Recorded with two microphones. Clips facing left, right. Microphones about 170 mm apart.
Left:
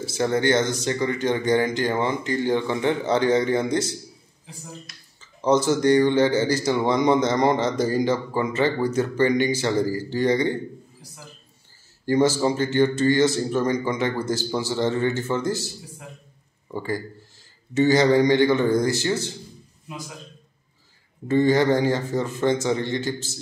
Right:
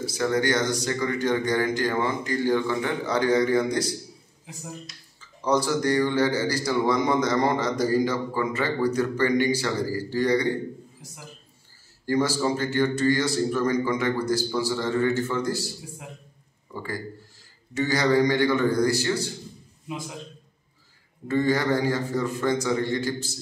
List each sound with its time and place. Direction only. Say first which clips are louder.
0.0 s a man's voice: left 2 dB; 25° left (ahead or behind)
5.2 s a man's voice: left 4 dB; 20° left (ahead or behind)
12.1 s a man's voice: left 4 dB; 20° left (ahead or behind)
21.3 s a man's voice: left 4 dB; 25° left (ahead or behind)